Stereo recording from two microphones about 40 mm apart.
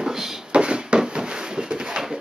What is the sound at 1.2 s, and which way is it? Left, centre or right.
Pigeon, right.